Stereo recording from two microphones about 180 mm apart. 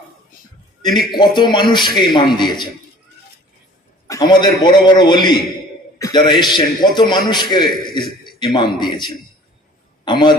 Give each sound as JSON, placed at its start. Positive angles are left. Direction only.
{"t": 0.8, "sound": "a man's voice", "side_deg": 25}
{"t": 4.1, "sound": "a man's voice", "side_deg": 20}